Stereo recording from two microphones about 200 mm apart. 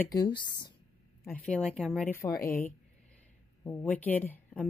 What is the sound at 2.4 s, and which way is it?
Speech, 15° left (ahead or behind).